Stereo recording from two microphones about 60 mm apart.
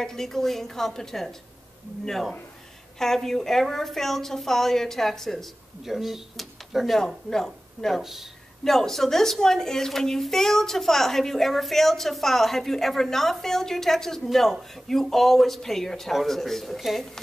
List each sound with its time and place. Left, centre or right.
0.0 s a woman's voice: centre
8.0 s a woman's voice: centre